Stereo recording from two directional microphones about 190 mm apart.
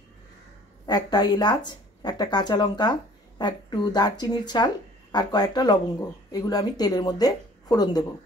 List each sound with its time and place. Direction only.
0.8 s speech: 20° left (ahead or behind)